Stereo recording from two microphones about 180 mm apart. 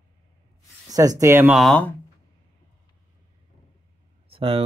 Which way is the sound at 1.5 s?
5° left (ahead or behind).